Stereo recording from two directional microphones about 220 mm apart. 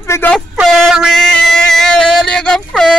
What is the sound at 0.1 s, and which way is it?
Speech, 10° left (ahead or behind).